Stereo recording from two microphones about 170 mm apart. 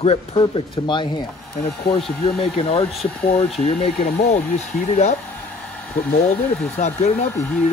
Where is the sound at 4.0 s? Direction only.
60° left (ahead or behind).